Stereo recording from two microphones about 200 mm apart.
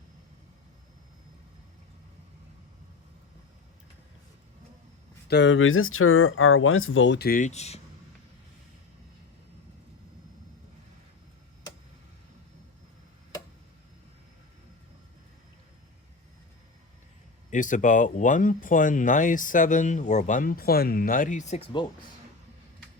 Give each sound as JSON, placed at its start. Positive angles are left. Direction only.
{"t": 5.3, "sound": "speech", "side_deg": 65}
{"t": 7.3, "sound": "speech", "side_deg": 40}
{"t": 17.5, "sound": "speech", "side_deg": 40}